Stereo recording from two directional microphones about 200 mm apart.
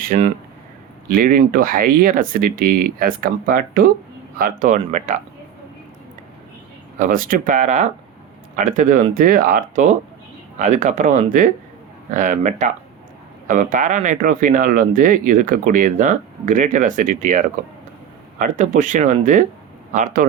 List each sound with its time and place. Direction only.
0.0 s speech: 45° right (ahead or behind)
7.0 s speech: 40° right (ahead or behind)